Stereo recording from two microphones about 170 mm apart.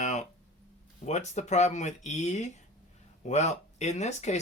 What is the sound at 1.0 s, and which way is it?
Speech, 40° left (ahead or behind).